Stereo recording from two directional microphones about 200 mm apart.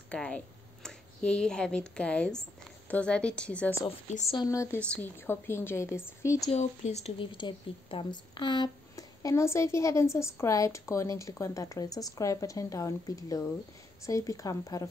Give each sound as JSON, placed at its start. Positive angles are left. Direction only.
{"t": 0.1, "sound": "a woman's voice", "side_deg": 5}
{"t": 6.5, "sound": "speech", "side_deg": 35}